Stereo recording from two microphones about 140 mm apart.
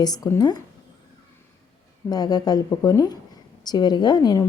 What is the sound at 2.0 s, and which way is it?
Speech, 30° left (ahead or behind).